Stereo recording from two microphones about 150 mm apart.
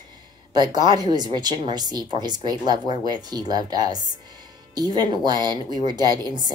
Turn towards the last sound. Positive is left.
turn(degrees=-30)  # may be behind; listen again after turning